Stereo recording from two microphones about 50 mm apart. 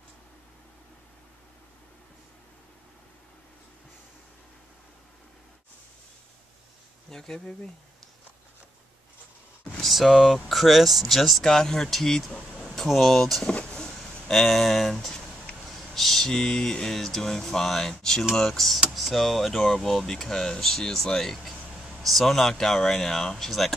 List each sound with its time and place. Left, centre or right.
7.1 s speech: centre
9.7 s speech: centre
13.5 s vehicle: left
13.9 s speech: centre